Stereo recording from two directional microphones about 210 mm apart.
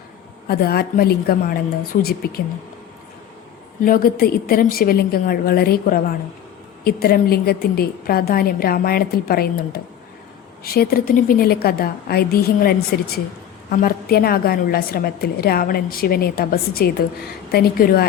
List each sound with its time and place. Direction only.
0.4 s a woman's voice: 50° left (ahead or behind)
3.8 s a woman's voice: 45° left (ahead or behind)